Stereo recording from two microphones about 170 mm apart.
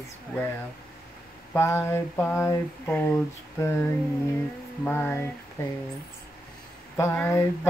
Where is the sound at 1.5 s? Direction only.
15° left (ahead or behind).